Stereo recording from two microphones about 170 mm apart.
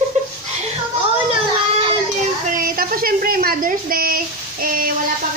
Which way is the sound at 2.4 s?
55° right (ahead or behind).